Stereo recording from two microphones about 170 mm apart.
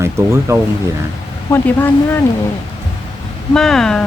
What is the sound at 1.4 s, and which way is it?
Speech, 15° left (ahead or behind).